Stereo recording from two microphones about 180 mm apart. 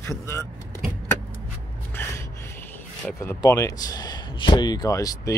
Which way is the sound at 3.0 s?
15° left (ahead or behind).